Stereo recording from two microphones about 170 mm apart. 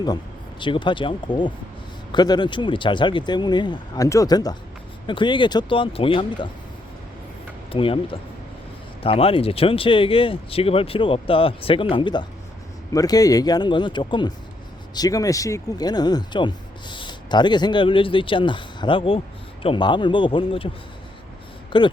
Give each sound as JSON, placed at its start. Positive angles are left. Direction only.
{"t": 0.6, "sound": "speech", "side_deg": 30}
{"t": 7.7, "sound": "speech", "side_deg": 30}
{"t": 21.7, "sound": "speech", "side_deg": 25}